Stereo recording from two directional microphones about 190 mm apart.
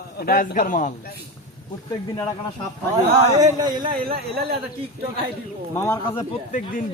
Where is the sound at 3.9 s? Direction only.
50° right (ahead or behind).